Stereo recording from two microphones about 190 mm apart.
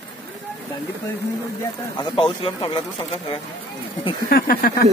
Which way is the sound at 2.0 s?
25° left (ahead or behind).